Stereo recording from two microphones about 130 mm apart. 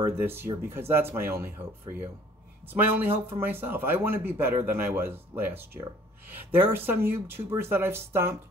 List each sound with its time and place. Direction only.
0.0 s speech: 15° right (ahead or behind)
2.7 s speech: 15° right (ahead or behind)